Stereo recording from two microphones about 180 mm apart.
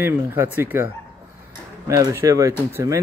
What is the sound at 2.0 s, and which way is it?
Speech, 20° right (ahead or behind).